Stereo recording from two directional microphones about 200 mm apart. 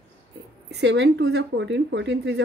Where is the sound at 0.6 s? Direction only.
60° right (ahead or behind).